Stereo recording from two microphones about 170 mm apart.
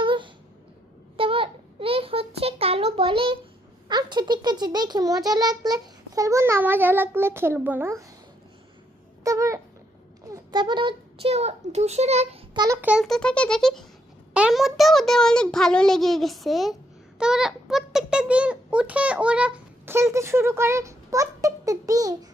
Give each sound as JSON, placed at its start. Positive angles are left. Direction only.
{"t": 0.0, "sound": "a sound", "side_deg": -30}
{"t": 3.8, "sound": "a child's voice", "side_deg": -25}
{"t": 9.2, "sound": "a child's voice", "side_deg": -20}
{"t": 12.5, "sound": "a child's voice", "side_deg": -20}
{"t": 12.8, "sound": "a child's voice", "side_deg": -5}